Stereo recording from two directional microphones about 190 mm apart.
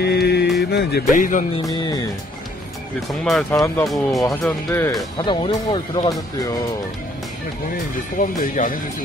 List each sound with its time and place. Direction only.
0.0 s a sound: 60° left (ahead or behind)
0.6 s speech: 60° left (ahead or behind)
1.1 s speech: 45° left (ahead or behind)
1.6 s speech: 20° left (ahead or behind)
3.5 s speech: 15° left (ahead or behind)
3.8 s speech: centre (ahead or behind)
5.2 s speech: 25° left (ahead or behind)
8.2 s speech: 45° left (ahead or behind)